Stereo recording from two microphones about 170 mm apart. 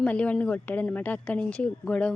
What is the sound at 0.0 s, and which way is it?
A woman's voice, 5° left (ahead or behind).